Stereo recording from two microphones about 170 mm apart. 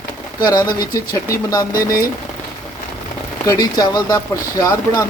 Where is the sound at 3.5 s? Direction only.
20° left (ahead or behind).